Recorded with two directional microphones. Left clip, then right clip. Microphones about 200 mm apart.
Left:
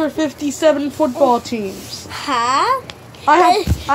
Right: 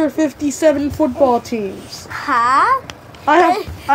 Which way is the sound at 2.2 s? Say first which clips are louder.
Right 3 dB; 90° left.